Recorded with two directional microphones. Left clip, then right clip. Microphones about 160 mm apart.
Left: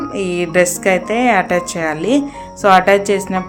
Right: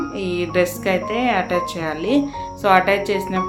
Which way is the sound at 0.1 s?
40° left (ahead or behind).